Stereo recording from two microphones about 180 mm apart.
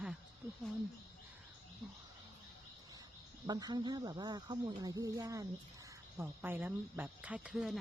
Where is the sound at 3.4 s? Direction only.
20° right (ahead or behind); by 7.8 s centre (ahead or behind).